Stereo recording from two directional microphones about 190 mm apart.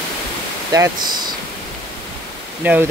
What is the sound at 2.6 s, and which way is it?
Speech, 10° right (ahead or behind).